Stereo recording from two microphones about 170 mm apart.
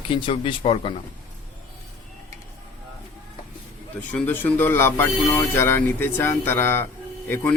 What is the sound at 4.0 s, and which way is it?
Speech, 10° left (ahead or behind).